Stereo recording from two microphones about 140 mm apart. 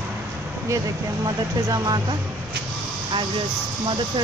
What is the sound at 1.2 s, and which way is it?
Speech, 30° right (ahead or behind).